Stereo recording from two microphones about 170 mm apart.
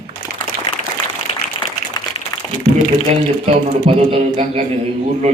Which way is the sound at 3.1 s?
40° right (ahead or behind).